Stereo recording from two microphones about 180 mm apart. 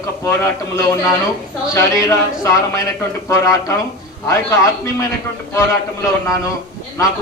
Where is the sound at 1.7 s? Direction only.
15° left (ahead or behind).